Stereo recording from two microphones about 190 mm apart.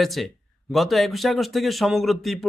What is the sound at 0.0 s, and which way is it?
A man's voice, centre (ahead or behind).